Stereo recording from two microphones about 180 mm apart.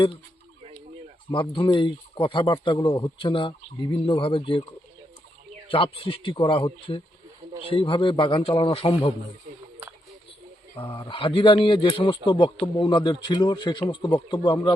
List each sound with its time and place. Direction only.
1.3 s speech: 25° left (ahead or behind)
5.7 s speech: 30° left (ahead or behind)
10.8 s speech: 30° left (ahead or behind)